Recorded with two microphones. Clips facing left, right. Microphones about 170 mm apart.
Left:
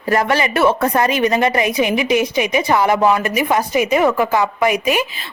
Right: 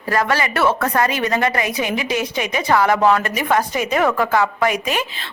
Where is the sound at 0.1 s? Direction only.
20° left (ahead or behind).